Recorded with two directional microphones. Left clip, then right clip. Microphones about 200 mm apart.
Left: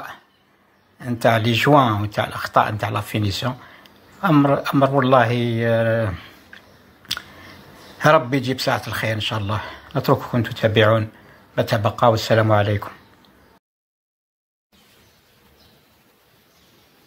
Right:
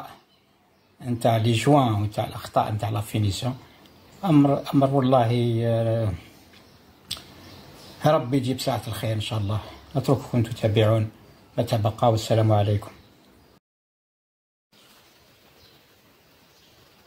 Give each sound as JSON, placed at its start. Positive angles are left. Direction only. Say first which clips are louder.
{"t": 0.9, "sound": "speech", "louder": "left 5 dB", "side_deg": 5}
{"t": 8.0, "sound": "speech", "louder": "left 6 dB", "side_deg": 5}